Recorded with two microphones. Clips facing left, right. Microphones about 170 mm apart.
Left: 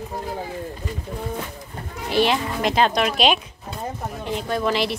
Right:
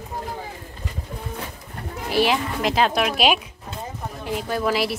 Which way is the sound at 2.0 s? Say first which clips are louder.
Left 1 dB; 5° right (ahead or behind).